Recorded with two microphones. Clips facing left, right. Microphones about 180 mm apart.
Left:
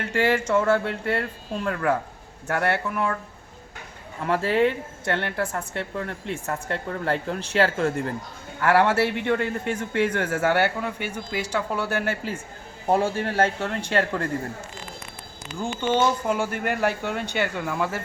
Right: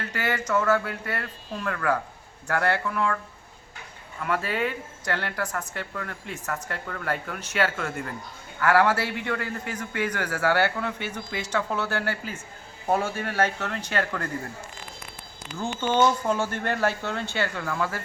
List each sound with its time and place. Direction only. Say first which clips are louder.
0.0 s speech: left 7 dB; 25° left (ahead or behind)
4.2 s speech: left 6 dB; 30° left (ahead or behind)
16.2 s speech: left 1 dB; 10° left (ahead or behind)